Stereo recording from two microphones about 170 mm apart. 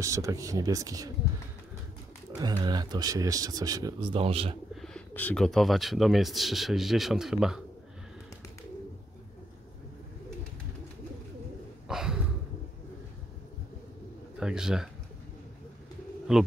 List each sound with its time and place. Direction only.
0.0 s speech: 20° right (ahead or behind)
2.4 s speech: 25° right (ahead or behind)
4.8 s speech: 10° left (ahead or behind)
11.9 s a sound: 5° right (ahead or behind)
14.4 s speech: 5° right (ahead or behind)
16.3 s speech: 5° right (ahead or behind)